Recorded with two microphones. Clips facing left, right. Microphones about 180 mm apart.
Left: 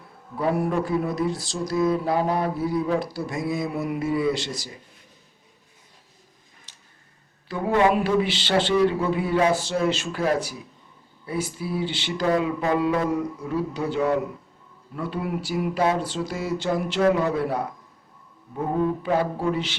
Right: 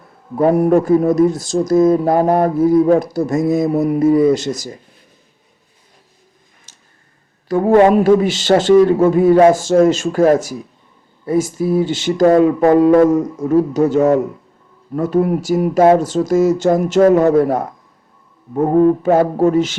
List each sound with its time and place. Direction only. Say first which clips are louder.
0.3 s speech: right 11 dB; 45° right (ahead or behind)
6.7 s a sound: right 3 dB; 45° right (ahead or behind)
7.4 s speech: right 10 dB; 45° right (ahead or behind)